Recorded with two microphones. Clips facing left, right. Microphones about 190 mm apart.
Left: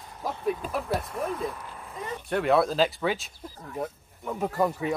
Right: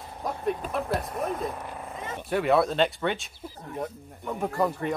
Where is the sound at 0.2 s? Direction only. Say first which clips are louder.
Even; centre (ahead or behind).